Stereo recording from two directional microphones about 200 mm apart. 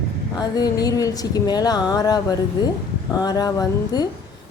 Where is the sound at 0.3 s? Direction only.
20° left (ahead or behind).